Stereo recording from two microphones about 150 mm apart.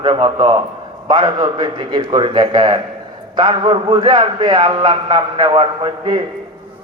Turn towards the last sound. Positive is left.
turn(degrees=-35)  # may be behind; listen again after turning